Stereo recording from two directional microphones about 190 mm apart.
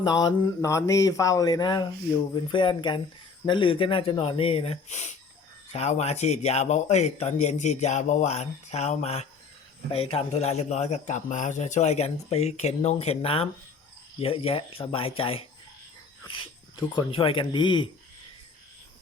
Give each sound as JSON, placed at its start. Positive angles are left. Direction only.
{"t": 0.0, "sound": "a man's voice", "side_deg": 20}
{"t": 16.9, "sound": "speech", "side_deg": 30}